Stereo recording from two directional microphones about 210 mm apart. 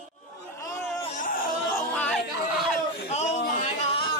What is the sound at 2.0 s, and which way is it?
Chatter, 5° left (ahead or behind).